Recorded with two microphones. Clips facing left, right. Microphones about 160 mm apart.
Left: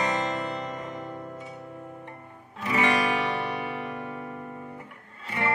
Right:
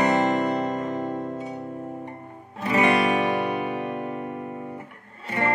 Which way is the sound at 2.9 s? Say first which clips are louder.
Right 5 dB; 50° right (ahead or behind).